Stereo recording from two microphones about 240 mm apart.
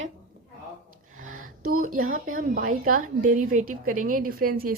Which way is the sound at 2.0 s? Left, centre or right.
Right.